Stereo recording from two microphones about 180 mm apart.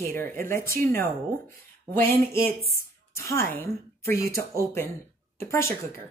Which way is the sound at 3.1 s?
15° left (ahead or behind).